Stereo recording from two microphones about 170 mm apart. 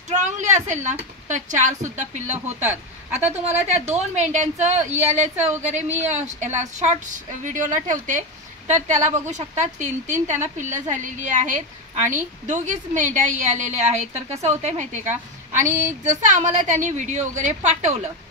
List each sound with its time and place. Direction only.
0.1 s a woman's voice: 45° right (ahead or behind)